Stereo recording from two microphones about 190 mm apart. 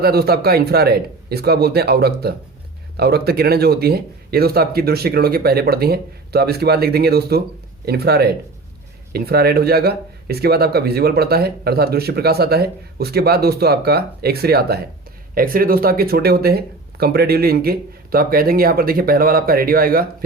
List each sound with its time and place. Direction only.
0.0 s speech: 55° right (ahead or behind)